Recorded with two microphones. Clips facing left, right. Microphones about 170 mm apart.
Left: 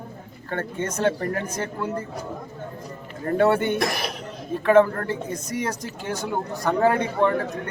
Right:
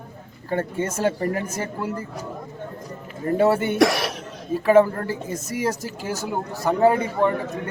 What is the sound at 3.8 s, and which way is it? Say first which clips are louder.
Speech: right 7 dB; 80° right.